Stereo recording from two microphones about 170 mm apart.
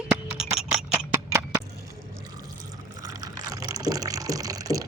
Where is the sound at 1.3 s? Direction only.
20° right (ahead or behind).